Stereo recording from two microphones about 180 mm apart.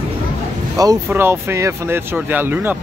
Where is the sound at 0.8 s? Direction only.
15° right (ahead or behind).